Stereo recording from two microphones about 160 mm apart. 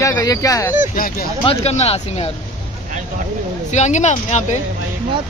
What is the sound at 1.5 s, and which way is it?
Speech, 40° left (ahead or behind).